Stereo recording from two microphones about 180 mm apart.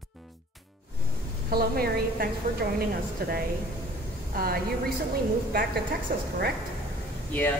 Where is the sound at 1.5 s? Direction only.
60° right (ahead or behind).